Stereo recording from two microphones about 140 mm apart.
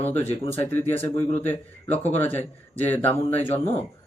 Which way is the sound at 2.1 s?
15° left (ahead or behind).